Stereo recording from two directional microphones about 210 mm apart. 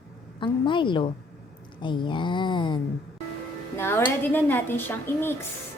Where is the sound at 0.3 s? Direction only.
20° left (ahead or behind).